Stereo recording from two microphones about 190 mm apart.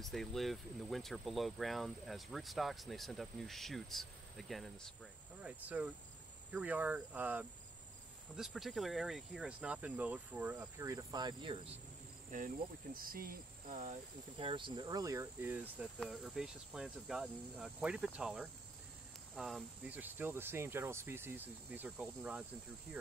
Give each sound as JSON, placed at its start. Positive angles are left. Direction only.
{"t": 0.0, "sound": "speech", "side_deg": 0}
{"t": 10.8, "sound": "speech", "side_deg": -20}
{"t": 12.3, "sound": "cricket", "side_deg": -45}
{"t": 14.3, "sound": "speech", "side_deg": -25}